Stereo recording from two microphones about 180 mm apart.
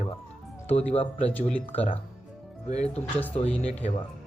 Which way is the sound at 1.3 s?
10° left (ahead or behind).